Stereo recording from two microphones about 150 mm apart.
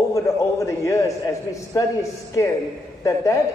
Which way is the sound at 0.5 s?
20° left (ahead or behind).